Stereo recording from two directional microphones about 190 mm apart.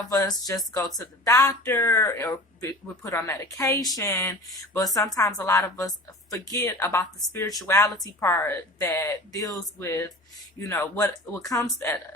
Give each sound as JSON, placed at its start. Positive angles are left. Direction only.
{"t": 0.1, "sound": "speech", "side_deg": 20}